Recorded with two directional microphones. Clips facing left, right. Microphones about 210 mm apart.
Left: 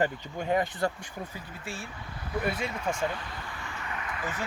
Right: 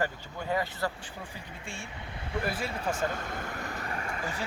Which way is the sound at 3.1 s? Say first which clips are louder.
Right 2 dB; 45° right (ahead or behind).